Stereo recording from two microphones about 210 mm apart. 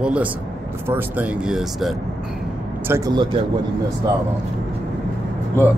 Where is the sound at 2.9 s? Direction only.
15° right (ahead or behind).